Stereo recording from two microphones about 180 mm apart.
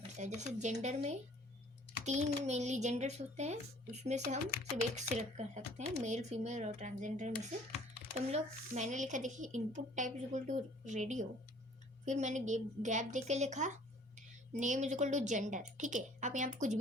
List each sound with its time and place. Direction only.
0.3 s speech: 40° right (ahead or behind)